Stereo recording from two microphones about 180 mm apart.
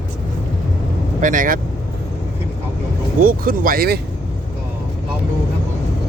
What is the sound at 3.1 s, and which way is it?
Music, 50° right (ahead or behind).